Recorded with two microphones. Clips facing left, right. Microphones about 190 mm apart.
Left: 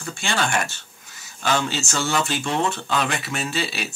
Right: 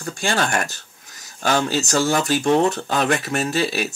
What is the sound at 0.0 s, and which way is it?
Speech, 40° right (ahead or behind).